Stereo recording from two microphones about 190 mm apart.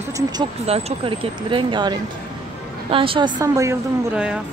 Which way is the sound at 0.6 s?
35° right (ahead or behind).